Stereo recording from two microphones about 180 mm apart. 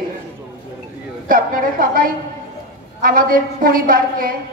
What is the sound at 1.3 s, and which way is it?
A man's voice, 50° right (ahead or behind).